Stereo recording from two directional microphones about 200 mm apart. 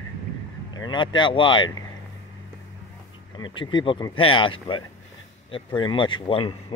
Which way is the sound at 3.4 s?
20° left (ahead or behind).